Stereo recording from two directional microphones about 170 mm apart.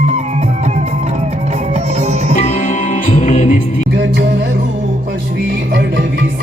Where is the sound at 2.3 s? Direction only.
45° left (ahead or behind).